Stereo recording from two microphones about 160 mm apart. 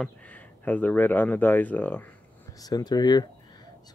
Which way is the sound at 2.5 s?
25° left (ahead or behind).